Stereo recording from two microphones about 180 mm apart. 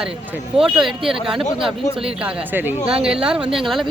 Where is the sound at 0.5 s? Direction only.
5° right (ahead or behind).